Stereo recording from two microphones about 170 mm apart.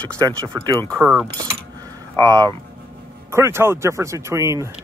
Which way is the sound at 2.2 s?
20° right (ahead or behind).